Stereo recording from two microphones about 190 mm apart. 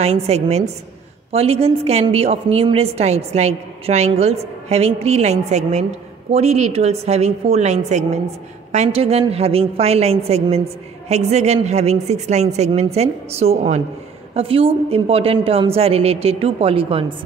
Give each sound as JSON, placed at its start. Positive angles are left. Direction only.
{"t": 0.0, "sound": "a woman's voice", "side_deg": -35}